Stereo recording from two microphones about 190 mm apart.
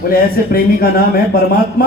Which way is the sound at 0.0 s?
50° left (ahead or behind).